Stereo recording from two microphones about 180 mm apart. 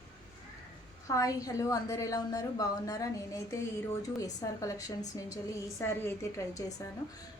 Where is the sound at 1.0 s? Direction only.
20° left (ahead or behind).